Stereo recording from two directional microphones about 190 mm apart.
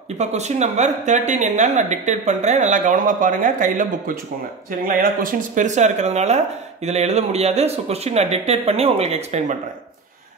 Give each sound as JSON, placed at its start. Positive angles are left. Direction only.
{"t": 0.2, "sound": "speech", "side_deg": -35}